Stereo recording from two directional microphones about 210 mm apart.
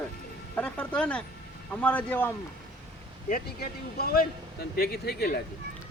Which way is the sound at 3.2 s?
45° left (ahead or behind).